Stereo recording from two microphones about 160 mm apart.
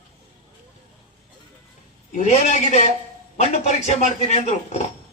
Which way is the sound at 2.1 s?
45° left (ahead or behind).